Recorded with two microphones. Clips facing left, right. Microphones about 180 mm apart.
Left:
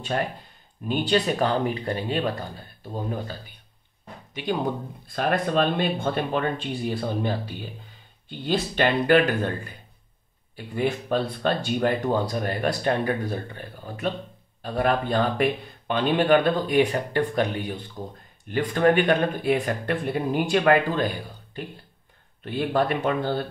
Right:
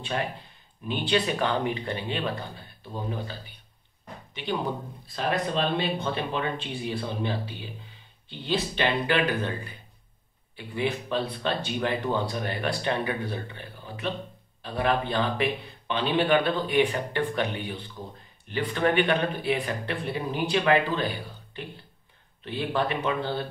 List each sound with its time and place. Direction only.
0.0 s speech: 45° left (ahead or behind)